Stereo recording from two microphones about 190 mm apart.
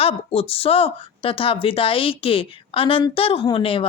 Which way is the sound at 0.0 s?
30° left (ahead or behind).